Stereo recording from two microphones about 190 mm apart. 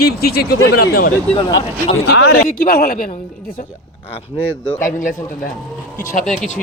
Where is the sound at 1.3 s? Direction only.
25° left (ahead or behind).